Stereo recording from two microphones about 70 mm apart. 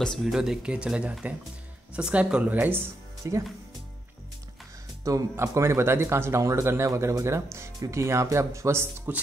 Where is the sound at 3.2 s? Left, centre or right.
Right.